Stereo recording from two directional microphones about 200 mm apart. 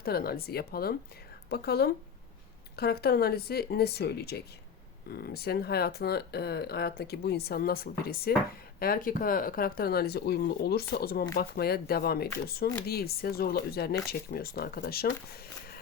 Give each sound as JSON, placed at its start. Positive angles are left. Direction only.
{"t": 0.0, "sound": "speech", "side_deg": 50}